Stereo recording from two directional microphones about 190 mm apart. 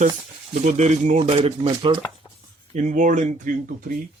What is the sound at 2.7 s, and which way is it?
Speech, 40° right (ahead or behind).